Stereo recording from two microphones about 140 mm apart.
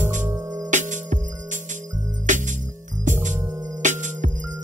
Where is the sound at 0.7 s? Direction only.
60° right (ahead or behind).